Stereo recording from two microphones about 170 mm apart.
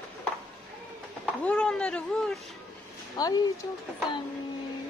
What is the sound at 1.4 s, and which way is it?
Speech, 5° left (ahead or behind).